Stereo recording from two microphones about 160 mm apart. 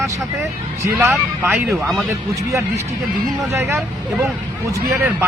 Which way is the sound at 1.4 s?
15° right (ahead or behind).